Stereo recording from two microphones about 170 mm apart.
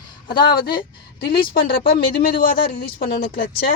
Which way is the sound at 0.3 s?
60° left (ahead or behind).